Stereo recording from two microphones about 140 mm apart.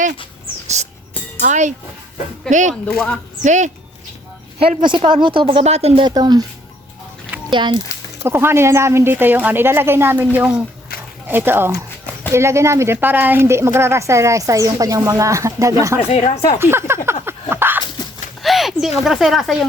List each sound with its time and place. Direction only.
0.7 s music: 55° right (ahead or behind)
1.4 s a child's voice: 60° right (ahead or behind)
4.8 s speech: 35° right (ahead or behind)
6.1 s speech: 30° right (ahead or behind)
7.5 s speech: 35° right (ahead or behind)
8.2 s speech: 15° right (ahead or behind)
16.0 s speech: 50° left (ahead or behind)
16.6 s speech: 15° right (ahead or behind)
17.5 s a sound: 15° right (ahead or behind)
18.4 s a sound: centre (ahead or behind)
19.0 s speech: centre (ahead or behind)